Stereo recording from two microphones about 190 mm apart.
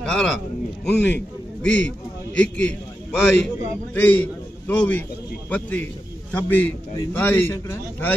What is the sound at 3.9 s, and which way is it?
A man's voice, 10° left (ahead or behind).